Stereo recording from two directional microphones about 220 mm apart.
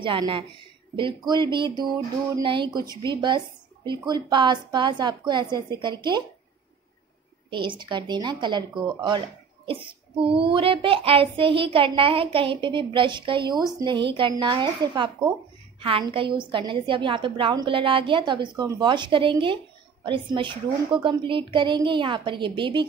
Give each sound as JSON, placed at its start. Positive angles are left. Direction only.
{"t": 0.0, "sound": "a woman's voice", "side_deg": -20}
{"t": 7.4, "sound": "a woman's voice", "side_deg": -20}
{"t": 10.3, "sound": "a woman's voice", "side_deg": -25}